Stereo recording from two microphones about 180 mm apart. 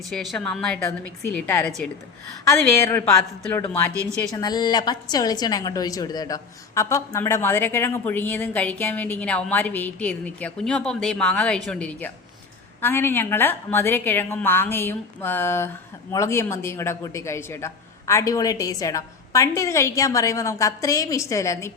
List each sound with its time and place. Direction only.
0.1 s a woman's voice: centre (ahead or behind)